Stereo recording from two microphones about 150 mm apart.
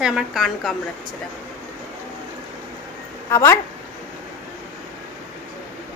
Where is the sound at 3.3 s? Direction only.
20° left (ahead or behind).